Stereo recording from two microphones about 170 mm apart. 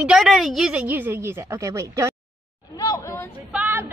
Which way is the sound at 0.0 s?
Centre (ahead or behind).